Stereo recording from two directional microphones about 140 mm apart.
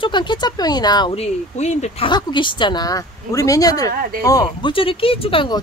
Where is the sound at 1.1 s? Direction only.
50° left (ahead or behind).